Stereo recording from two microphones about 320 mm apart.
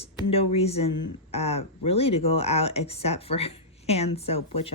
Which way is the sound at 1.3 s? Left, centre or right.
Centre.